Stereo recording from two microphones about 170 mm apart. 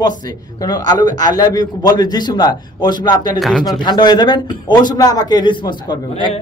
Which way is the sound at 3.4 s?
Centre (ahead or behind).